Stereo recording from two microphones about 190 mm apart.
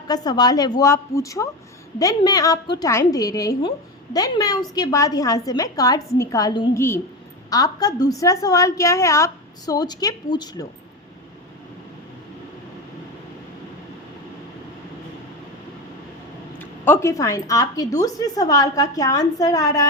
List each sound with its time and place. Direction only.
0.1 s a woman's voice: 20° left (ahead or behind)
16.6 s a woman's voice: 10° left (ahead or behind)